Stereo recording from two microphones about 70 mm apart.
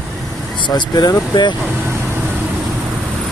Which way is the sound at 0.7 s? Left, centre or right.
Left.